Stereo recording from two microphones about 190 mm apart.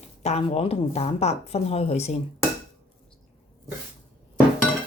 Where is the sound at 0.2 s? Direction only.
35° left (ahead or behind).